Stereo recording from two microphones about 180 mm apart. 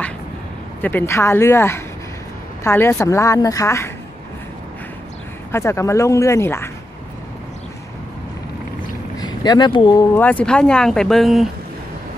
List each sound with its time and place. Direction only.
0.7 s a woman's voice: 10° left (ahead or behind)
5.5 s a woman's voice: 15° left (ahead or behind)
9.2 s speech: 25° left (ahead or behind)
10.1 s speech: 10° left (ahead or behind)